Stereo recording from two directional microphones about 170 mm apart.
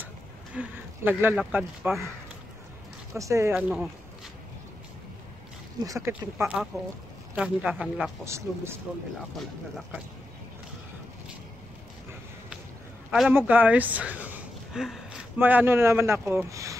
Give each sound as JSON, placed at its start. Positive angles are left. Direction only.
{"t": 0.6, "sound": "speech", "side_deg": -10}
{"t": 3.1, "sound": "speech", "side_deg": -15}
{"t": 5.9, "sound": "speech", "side_deg": -15}
{"t": 8.3, "sound": "speech", "side_deg": -15}
{"t": 13.1, "sound": "speech", "side_deg": -5}